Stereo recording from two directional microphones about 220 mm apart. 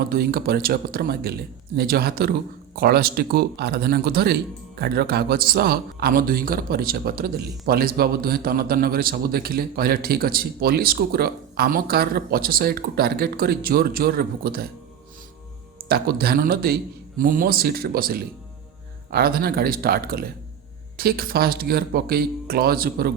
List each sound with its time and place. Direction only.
0.1 s a man's voice: 45° right (ahead or behind)
15.9 s a man's voice: 45° right (ahead or behind)